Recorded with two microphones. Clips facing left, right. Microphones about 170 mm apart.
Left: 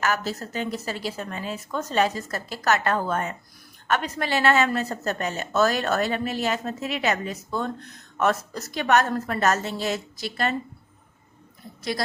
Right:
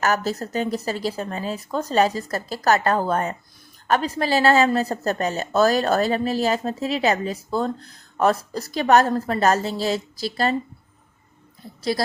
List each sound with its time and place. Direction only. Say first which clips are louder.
0.0 s a woman's voice: right 4 dB; 40° right (ahead or behind)
11.8 s a woman's voice: right 5 dB; 35° right (ahead or behind)